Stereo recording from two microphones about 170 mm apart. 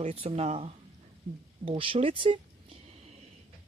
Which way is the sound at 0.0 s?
35° right (ahead or behind).